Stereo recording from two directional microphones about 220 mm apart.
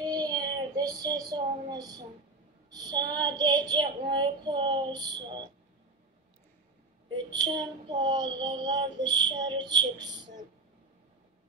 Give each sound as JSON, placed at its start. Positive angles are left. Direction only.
{"t": 0.0, "sound": "child singing", "side_deg": -15}
{"t": 1.3, "sound": "a sound", "side_deg": -15}
{"t": 3.1, "sound": "child singing", "side_deg": -20}
{"t": 7.1, "sound": "child singing", "side_deg": -20}